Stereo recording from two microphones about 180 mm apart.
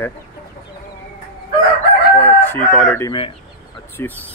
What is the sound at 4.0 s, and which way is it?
Speech, 10° left (ahead or behind).